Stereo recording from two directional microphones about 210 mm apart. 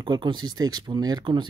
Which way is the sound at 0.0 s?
20° right (ahead or behind).